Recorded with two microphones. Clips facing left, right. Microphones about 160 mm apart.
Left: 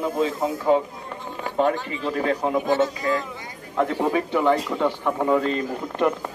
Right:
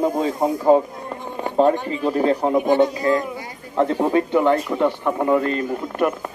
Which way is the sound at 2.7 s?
20° right (ahead or behind).